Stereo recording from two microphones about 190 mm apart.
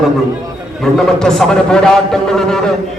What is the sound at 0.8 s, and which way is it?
A man's voice, centre (ahead or behind).